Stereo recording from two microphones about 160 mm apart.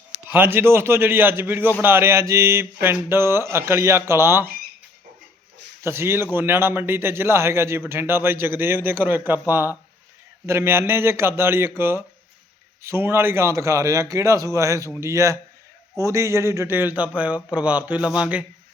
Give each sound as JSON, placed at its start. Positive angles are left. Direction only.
{"t": 0.3, "sound": "a man's voice", "side_deg": -15}
{"t": 5.8, "sound": "a man's voice", "side_deg": -15}